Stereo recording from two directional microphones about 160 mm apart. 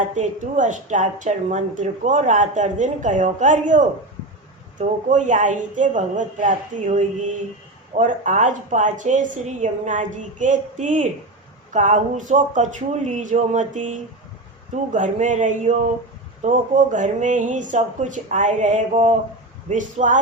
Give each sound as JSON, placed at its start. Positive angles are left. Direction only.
{"t": 0.2, "sound": "a woman's voice", "side_deg": -50}